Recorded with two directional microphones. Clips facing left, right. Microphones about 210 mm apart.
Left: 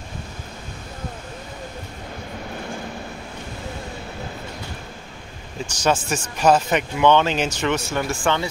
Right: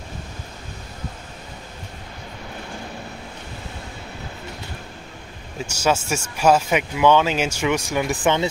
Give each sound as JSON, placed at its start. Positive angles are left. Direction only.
{"t": 5.7, "sound": "speech", "side_deg": -10}